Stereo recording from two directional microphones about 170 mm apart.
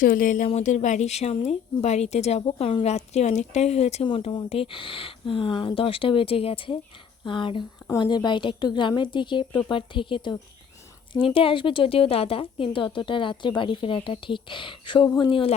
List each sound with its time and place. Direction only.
0.0 s speech: 55° left (ahead or behind); by 10.3 s 30° left (ahead or behind)
11.3 s speech: 30° left (ahead or behind)